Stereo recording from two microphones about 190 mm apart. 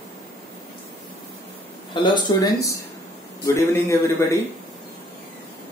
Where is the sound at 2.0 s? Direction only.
20° left (ahead or behind).